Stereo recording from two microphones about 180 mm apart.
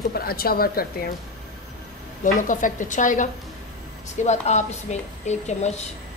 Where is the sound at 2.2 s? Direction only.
45° left (ahead or behind).